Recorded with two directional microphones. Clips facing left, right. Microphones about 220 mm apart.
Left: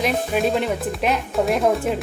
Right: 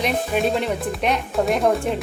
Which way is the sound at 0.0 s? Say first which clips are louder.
Left 1 dB; centre (ahead or behind).